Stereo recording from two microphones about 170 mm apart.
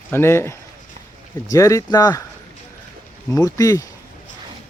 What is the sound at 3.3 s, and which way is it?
Speech, 20° left (ahead or behind).